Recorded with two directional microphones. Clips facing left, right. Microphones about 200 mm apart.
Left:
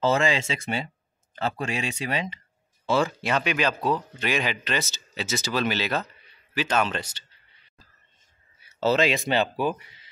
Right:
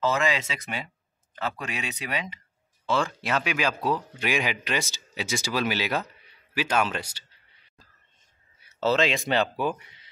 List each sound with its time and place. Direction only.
0.0 s speech: 30° left (ahead or behind)
2.9 s speech: 5° left (ahead or behind)
8.7 s speech: centre (ahead or behind)